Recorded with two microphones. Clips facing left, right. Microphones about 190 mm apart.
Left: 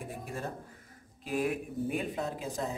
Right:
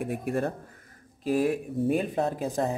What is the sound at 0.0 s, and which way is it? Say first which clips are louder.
Speech: right 11 dB; 65° right (ahead or behind).